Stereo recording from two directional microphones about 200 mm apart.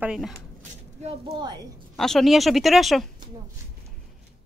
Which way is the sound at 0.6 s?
30° right (ahead or behind).